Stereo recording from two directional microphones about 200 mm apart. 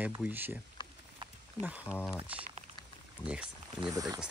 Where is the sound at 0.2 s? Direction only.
10° right (ahead or behind).